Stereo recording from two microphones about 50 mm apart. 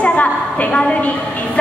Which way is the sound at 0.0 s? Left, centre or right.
Left.